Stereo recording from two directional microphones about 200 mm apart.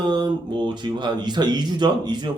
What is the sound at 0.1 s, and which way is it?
A man's voice, 20° right (ahead or behind).